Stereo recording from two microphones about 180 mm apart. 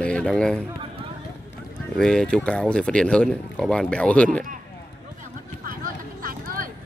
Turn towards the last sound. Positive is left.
turn(degrees=-50)  # may be behind; listen again after turning